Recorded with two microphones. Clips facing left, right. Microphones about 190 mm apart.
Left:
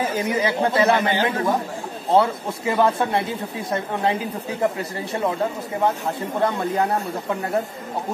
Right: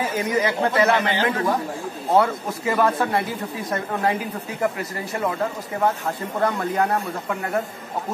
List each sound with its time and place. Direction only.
0.3 s speech: 25° left (ahead or behind)
0.8 s speech: 15° left (ahead or behind)
6.4 s speech: 20° left (ahead or behind)